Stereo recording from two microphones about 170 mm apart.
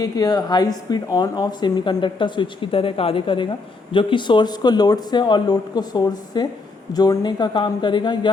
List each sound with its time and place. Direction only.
0.0 s speech: 20° left (ahead or behind)